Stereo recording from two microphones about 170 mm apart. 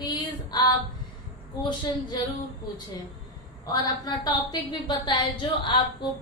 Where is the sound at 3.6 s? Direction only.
25° left (ahead or behind).